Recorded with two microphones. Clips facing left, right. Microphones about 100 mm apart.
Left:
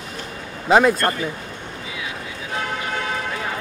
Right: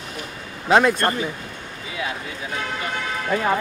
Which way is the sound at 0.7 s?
Centre (ahead or behind).